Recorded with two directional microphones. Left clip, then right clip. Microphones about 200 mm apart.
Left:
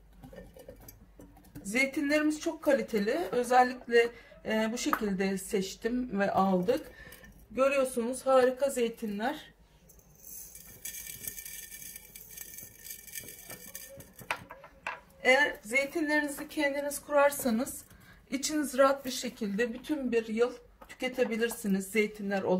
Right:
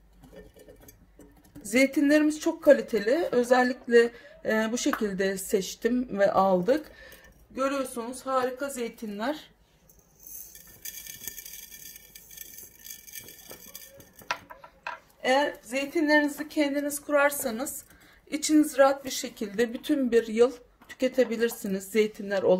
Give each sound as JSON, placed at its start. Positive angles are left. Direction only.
{"t": 1.6, "sound": "speech", "side_deg": -50}
{"t": 7.5, "sound": "speech", "side_deg": -25}
{"t": 15.2, "sound": "a woman's voice", "side_deg": -30}